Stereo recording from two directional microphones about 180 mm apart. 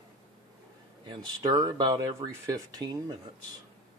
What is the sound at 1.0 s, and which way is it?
Speech, 25° right (ahead or behind).